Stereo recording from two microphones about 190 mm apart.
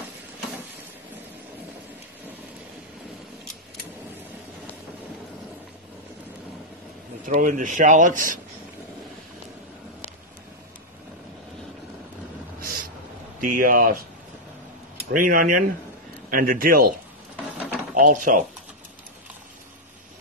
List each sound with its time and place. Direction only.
7.2 s speech: 45° right (ahead or behind)
12.5 s a sound: 50° right (ahead or behind)
13.4 s speech: 45° right (ahead or behind)
15.0 s speech: 45° right (ahead or behind)
17.9 s speech: 45° right (ahead or behind)